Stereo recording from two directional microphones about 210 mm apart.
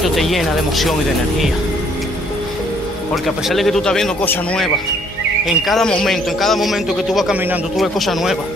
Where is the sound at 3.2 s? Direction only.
Centre (ahead or behind).